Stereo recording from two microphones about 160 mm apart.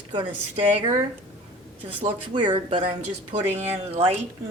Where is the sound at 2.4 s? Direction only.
30° right (ahead or behind).